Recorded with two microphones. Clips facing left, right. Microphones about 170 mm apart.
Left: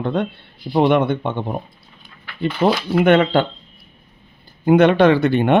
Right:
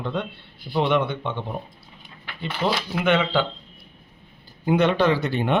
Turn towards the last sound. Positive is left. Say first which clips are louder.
# left 7 dB
turn(degrees=60)  # may be behind; listen again after turning